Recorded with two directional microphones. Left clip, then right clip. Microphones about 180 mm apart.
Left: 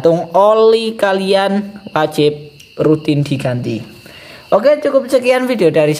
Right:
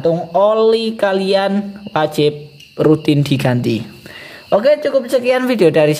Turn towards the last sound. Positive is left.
turn(degrees=-10)  # may be behind; listen again after turning